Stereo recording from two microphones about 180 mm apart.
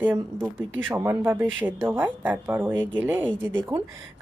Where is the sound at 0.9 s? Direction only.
10° right (ahead or behind).